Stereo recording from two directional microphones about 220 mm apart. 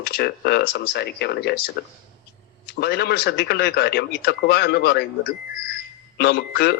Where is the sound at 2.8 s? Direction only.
45° left (ahead or behind).